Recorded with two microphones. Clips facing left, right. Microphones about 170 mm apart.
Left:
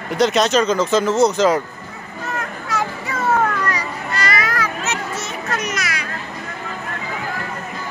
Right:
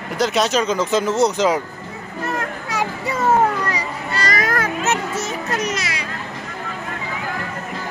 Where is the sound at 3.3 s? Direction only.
25° right (ahead or behind).